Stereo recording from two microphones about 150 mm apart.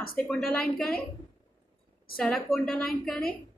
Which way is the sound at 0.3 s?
5° left (ahead or behind).